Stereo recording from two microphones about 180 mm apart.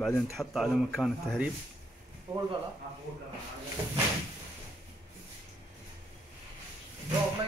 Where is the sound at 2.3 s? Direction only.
30° right (ahead or behind).